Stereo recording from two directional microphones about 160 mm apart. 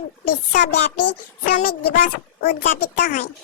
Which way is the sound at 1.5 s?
60° left (ahead or behind).